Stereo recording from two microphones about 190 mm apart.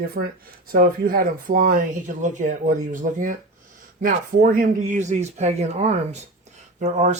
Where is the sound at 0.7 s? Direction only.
50° right (ahead or behind).